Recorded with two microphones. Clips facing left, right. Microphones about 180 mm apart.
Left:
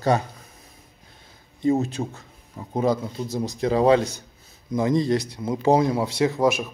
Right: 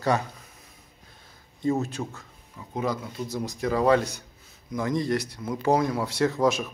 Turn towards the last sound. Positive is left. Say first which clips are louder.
# left 2 dB
turn(degrees=10)  # may be behind; listen again after turning